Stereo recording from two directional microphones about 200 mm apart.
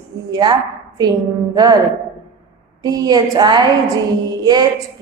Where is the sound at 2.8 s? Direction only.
20° right (ahead or behind).